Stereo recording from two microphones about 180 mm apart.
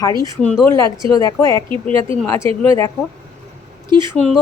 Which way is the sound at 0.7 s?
15° left (ahead or behind).